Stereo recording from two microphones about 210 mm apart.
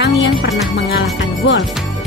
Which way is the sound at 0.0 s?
50° left (ahead or behind).